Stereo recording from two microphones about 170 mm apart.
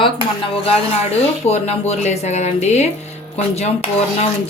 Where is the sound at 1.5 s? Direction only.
40° left (ahead or behind).